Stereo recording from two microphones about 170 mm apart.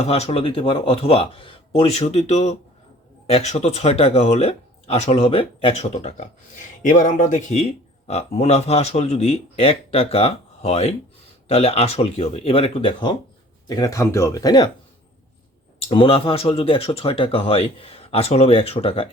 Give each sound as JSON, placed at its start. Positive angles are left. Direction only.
{"t": 0.0, "sound": "a man's voice", "side_deg": 35}
{"t": 15.9, "sound": "a man's voice", "side_deg": 30}